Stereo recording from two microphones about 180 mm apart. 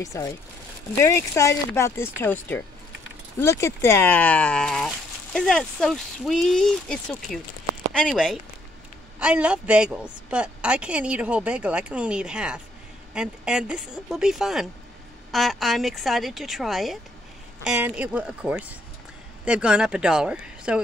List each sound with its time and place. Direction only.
0.0 s speech: 20° left (ahead or behind); by 20.8 s 5° right (ahead or behind)